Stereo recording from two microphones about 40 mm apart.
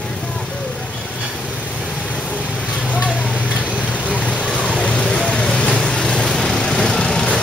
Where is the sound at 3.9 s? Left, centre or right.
Left; by 7.2 s centre.